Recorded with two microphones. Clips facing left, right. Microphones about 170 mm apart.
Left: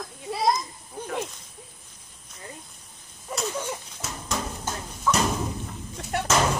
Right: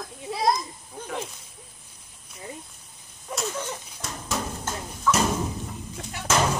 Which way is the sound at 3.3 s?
5° left (ahead or behind).